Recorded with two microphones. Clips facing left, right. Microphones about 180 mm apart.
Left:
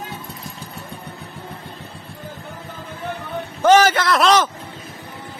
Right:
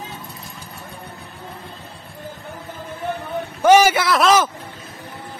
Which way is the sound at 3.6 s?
10° right (ahead or behind).